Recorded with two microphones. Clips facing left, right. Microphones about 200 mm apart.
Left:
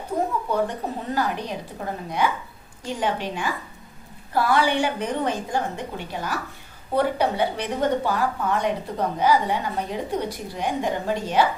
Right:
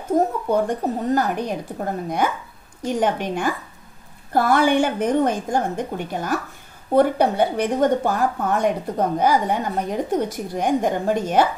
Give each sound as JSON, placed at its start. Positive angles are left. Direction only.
{"t": 0.5, "sound": "a woman's voice", "side_deg": -45}